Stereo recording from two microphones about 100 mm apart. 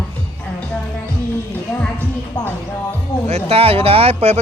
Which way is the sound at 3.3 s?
75° right (ahead or behind).